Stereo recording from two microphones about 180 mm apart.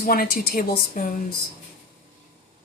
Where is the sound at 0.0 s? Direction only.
55° left (ahead or behind).